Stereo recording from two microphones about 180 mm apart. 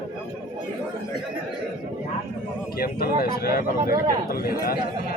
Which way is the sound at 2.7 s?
55° left (ahead or behind).